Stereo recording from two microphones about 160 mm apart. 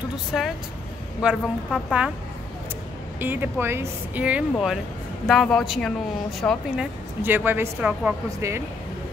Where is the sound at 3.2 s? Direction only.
10° right (ahead or behind).